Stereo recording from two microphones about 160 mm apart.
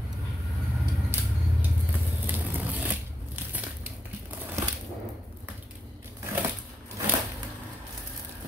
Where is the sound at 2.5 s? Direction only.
10° right (ahead or behind).